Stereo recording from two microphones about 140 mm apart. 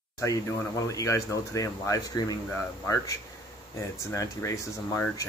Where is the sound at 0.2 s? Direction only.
25° left (ahead or behind).